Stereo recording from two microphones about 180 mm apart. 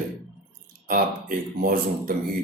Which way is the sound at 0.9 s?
55° right (ahead or behind).